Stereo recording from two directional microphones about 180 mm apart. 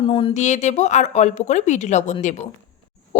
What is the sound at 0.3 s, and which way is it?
A woman's voice, 40° left (ahead or behind).